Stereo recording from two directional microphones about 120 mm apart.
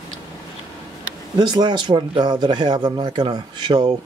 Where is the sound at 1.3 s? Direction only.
35° right (ahead or behind).